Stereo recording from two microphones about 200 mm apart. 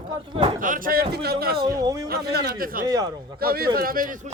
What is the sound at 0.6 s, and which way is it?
Speech, 45° right (ahead or behind).